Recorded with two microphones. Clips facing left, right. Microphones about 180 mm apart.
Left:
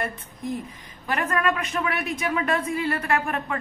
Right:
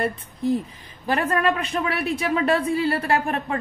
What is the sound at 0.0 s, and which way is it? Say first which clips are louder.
A woman's voice: right 6 dB; 30° right (ahead or behind).